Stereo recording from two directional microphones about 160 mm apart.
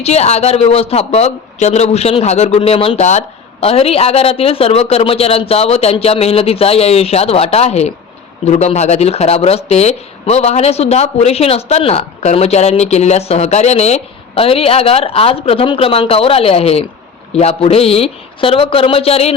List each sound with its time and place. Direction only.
0.0 s speech: 40° left (ahead or behind)